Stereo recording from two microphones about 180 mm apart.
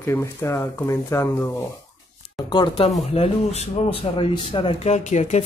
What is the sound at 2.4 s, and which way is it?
Speech, 25° left (ahead or behind).